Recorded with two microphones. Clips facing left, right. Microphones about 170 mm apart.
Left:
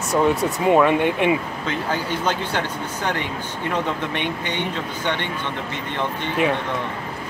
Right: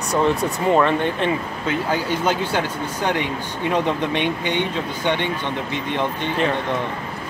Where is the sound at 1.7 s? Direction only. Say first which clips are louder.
Right 3 dB; 10° right (ahead or behind).